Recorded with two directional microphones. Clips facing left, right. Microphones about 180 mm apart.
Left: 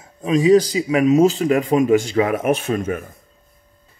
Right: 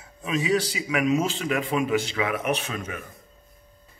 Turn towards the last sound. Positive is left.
turn(degrees=50)  # may be behind; listen again after turning